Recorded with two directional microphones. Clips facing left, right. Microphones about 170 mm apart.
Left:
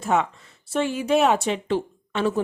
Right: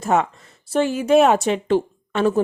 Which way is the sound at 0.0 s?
45° right (ahead or behind).